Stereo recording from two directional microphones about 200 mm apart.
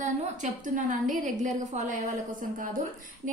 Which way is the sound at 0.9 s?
40° right (ahead or behind).